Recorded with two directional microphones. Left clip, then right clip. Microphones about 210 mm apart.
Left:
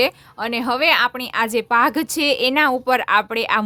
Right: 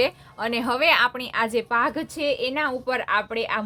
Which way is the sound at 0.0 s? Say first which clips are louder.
Left 4 dB; 30° left (ahead or behind).